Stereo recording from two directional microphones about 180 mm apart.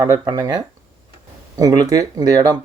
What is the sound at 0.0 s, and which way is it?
Speech, 20° right (ahead or behind).